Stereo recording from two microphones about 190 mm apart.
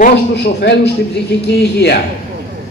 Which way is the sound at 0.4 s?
60° left (ahead or behind).